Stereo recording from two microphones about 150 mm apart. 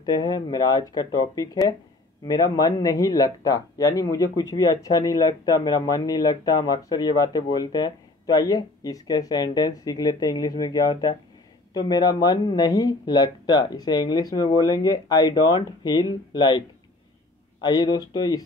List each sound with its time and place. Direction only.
0.0 s a man's voice: 25° left (ahead or behind)